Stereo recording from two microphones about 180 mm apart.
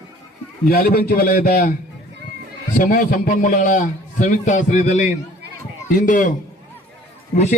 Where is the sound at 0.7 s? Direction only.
55° left (ahead or behind).